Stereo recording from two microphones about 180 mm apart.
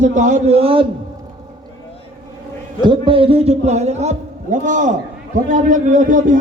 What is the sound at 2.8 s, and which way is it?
A man's voice, 30° right (ahead or behind).